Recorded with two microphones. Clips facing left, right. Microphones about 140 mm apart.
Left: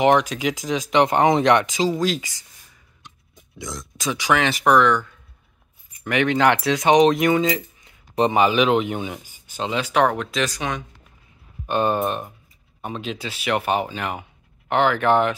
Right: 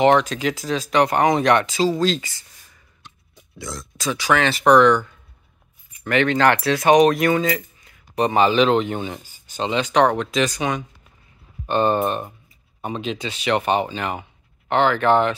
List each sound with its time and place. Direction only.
0.0 s speech: 10° left (ahead or behind)
3.0 s pig: 15° left (ahead or behind)
3.5 s speech: 15° left (ahead or behind)
4.7 s speech: centre (ahead or behind)
6.0 s speech: 15° left (ahead or behind)